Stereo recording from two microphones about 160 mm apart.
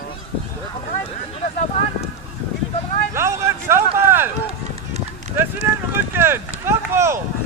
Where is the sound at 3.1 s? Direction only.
15° right (ahead or behind).